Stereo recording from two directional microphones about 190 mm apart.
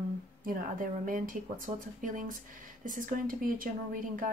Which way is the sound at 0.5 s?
45° right (ahead or behind).